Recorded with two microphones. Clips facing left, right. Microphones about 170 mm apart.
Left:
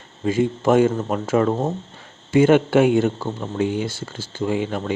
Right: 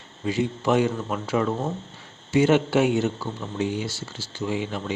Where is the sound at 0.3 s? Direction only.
45° left (ahead or behind).